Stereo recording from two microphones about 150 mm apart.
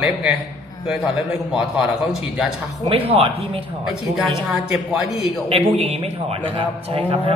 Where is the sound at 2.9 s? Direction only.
40° right (ahead or behind).